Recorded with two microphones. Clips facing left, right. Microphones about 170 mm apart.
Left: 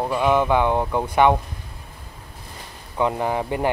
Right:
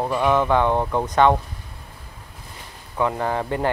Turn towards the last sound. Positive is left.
turn(degrees=15)  # may be behind; listen again after turning